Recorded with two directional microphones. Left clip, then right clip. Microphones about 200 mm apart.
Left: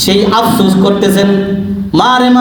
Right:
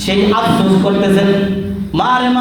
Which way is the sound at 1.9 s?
30° left (ahead or behind).